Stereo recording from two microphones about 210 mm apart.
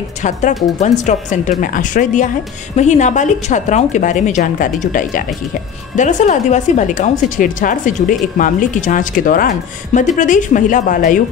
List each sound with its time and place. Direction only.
0.2 s speech: 35° left (ahead or behind)